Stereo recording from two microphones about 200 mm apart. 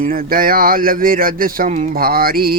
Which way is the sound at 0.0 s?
45° right (ahead or behind).